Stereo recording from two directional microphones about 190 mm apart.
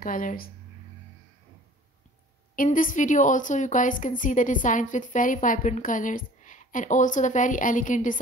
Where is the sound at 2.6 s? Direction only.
45° left (ahead or behind).